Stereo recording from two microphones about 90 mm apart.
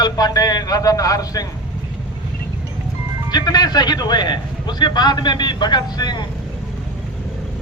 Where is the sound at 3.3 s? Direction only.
50° left (ahead or behind).